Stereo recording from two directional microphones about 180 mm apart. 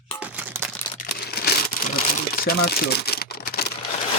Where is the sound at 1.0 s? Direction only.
60° left (ahead or behind).